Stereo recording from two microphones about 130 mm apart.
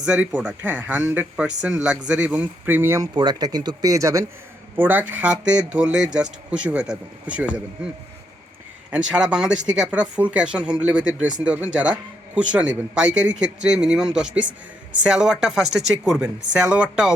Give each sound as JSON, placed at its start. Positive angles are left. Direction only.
{"t": 0.0, "sound": "a man's voice", "side_deg": -10}
{"t": 3.2, "sound": "speech", "side_deg": -35}
{"t": 4.8, "sound": "a man's voice", "side_deg": -15}
{"t": 8.9, "sound": "a man's voice", "side_deg": -10}